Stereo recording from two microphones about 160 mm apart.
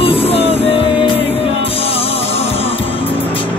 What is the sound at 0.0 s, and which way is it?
Music, 35° left (ahead or behind).